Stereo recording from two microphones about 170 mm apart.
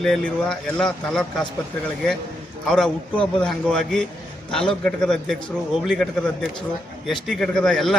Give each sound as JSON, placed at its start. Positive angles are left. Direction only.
{"t": 0.0, "sound": "speech", "side_deg": 5}
{"t": 2.6, "sound": "speech", "side_deg": 5}